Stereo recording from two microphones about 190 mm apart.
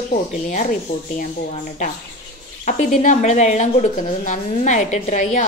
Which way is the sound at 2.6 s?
45° left (ahead or behind).